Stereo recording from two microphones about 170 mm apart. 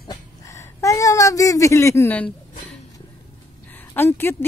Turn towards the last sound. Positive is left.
turn(degrees=15)  # may be behind; listen again after turning